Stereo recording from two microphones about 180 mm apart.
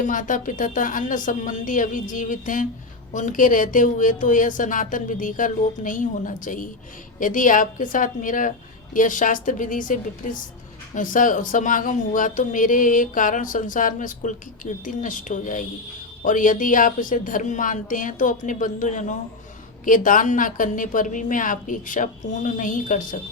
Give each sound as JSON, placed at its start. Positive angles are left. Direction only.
{"t": 0.0, "sound": "speech", "side_deg": 45}